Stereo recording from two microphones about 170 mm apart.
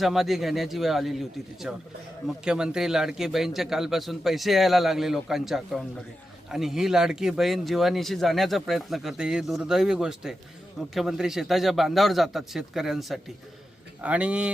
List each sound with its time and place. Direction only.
0.0 s speech: centre (ahead or behind)